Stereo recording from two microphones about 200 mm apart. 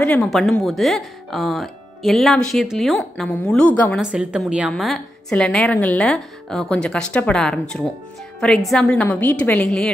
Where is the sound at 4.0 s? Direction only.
5° right (ahead or behind).